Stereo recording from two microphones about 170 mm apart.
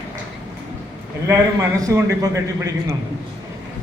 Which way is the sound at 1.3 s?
20° right (ahead or behind).